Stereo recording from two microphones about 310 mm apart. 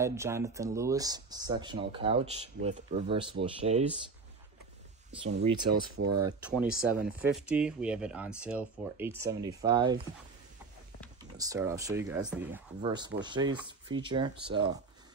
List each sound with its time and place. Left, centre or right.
0.0 s speech: centre
5.2 s speech: centre
6.2 s speech: centre
11.3 s speech: centre